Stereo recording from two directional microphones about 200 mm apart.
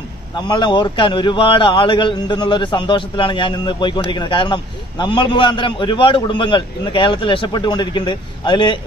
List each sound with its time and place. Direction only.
0.4 s a man's voice: 20° left (ahead or behind)